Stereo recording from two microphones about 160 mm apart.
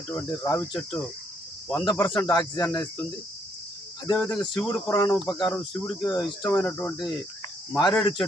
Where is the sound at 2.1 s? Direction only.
20° left (ahead or behind).